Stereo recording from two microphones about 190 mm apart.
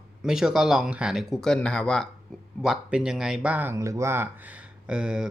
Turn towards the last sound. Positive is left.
turn(degrees=-5)  # may be behind; listen again after turning